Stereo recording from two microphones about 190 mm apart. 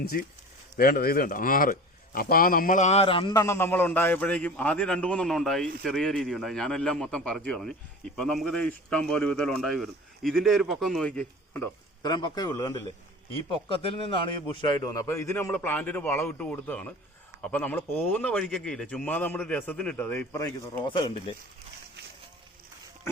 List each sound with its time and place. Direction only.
0.0 s a man's voice: 55° left (ahead or behind); by 11.7 s 5° left (ahead or behind)
12.0 s a man's voice: 20° left (ahead or behind)
14.5 s a man's voice: 20° left (ahead or behind)